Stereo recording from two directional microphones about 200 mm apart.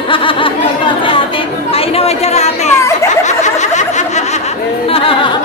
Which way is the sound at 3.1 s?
35° left (ahead or behind).